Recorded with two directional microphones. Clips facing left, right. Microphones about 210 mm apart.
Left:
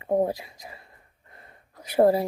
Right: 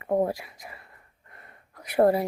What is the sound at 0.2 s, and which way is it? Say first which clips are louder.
Speech: left 1 dB; 20° left (ahead or behind).